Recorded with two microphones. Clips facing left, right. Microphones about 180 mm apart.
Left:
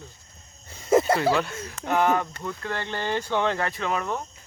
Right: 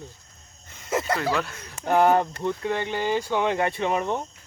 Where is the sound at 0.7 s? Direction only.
30° left (ahead or behind).